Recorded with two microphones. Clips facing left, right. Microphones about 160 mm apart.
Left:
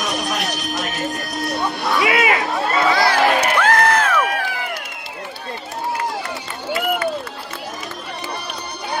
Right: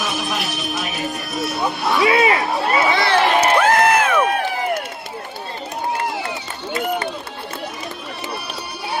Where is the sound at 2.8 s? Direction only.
25° right (ahead or behind).